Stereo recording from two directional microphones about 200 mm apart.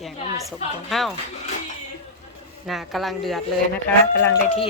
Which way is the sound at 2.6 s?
Centre (ahead or behind).